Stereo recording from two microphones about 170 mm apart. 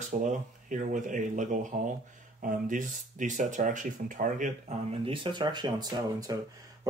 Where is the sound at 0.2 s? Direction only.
45° right (ahead or behind).